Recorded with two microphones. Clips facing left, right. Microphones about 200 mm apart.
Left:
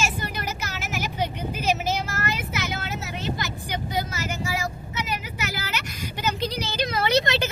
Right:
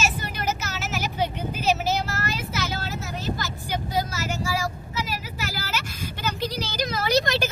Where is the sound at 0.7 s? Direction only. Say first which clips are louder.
Right 1 dB; 50° left (ahead or behind).